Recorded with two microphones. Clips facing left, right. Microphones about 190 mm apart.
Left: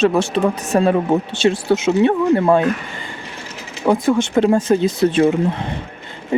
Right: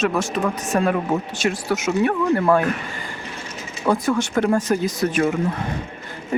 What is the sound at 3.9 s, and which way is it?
Speech, 25° left (ahead or behind).